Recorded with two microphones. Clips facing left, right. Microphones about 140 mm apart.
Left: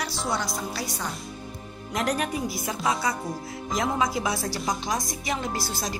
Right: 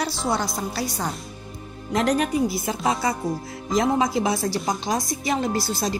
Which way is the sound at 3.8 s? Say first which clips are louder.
Right 5 dB; 30° right (ahead or behind).